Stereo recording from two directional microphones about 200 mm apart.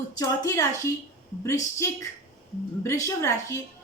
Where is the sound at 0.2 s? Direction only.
15° left (ahead or behind).